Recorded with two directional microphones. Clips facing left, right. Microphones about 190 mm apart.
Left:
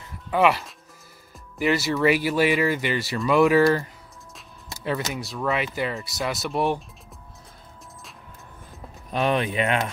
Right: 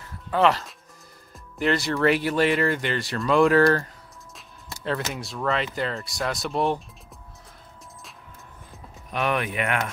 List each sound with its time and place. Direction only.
0.0 s music: 10° left (ahead or behind)
1.6 s speech: 5° left (ahead or behind)
5.1 s speech: 5° left (ahead or behind)
9.1 s speech: 25° left (ahead or behind)